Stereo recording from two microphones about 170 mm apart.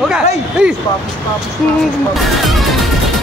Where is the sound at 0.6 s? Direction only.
5° right (ahead or behind).